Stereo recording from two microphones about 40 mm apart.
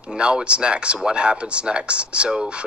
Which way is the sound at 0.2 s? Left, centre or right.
Right.